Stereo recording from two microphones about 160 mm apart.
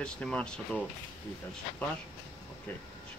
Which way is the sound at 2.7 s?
15° left (ahead or behind).